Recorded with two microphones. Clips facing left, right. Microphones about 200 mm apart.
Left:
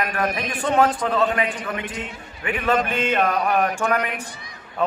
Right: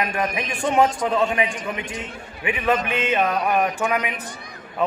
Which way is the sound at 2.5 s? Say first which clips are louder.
Even; 10° right (ahead or behind).